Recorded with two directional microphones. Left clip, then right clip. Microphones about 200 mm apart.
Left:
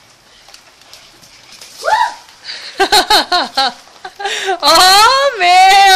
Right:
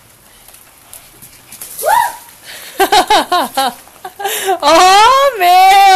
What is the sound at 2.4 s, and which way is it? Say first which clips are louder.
Speech: right 1 dB; 5° right (ahead or behind).